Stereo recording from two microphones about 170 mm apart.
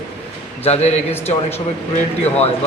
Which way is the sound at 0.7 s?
40° left (ahead or behind).